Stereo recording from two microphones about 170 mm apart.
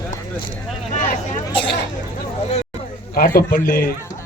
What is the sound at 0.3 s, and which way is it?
Speech, 30° left (ahead or behind).